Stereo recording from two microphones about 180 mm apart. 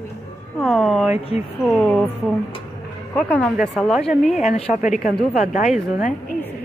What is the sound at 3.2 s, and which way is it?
A woman's voice, 5° left (ahead or behind).